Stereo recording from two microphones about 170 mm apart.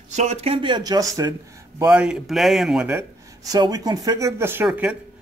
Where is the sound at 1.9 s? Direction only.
5° right (ahead or behind).